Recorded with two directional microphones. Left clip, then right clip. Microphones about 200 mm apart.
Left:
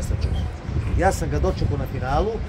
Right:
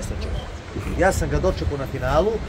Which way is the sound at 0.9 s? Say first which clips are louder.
Right 2 dB; 5° right (ahead or behind).